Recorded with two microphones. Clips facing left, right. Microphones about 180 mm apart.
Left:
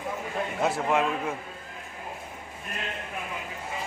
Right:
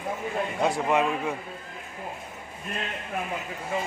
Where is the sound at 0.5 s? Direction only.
Centre (ahead or behind).